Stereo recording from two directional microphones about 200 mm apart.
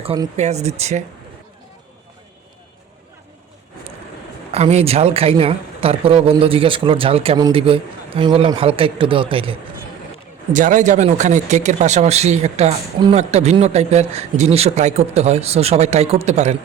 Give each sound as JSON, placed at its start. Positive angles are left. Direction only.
{"t": 0.0, "sound": "speech", "side_deg": -30}
{"t": 4.5, "sound": "speech", "side_deg": -30}
{"t": 10.5, "sound": "speech", "side_deg": -40}